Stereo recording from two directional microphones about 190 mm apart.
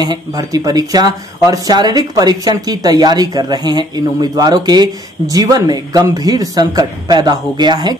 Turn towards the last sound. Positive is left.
turn(degrees=-20)  # may be behind; listen again after turning